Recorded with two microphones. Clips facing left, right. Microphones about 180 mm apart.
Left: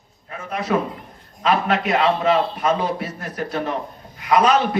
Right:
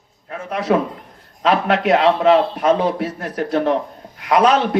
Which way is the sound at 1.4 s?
75° right (ahead or behind).